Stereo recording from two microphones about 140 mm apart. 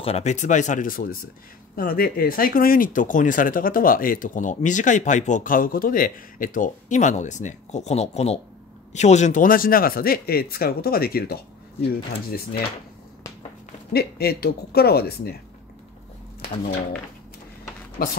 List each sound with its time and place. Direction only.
0.0 s speech: 50° left (ahead or behind); by 11.3 s 90° left
13.7 s speech: 90° left
18.0 s speech: 90° left